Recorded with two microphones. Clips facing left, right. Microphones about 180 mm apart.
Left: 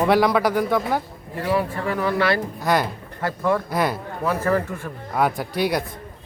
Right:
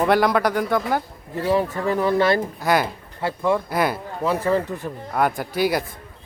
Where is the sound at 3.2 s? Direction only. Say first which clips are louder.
Right 1 dB; 15° right (ahead or behind).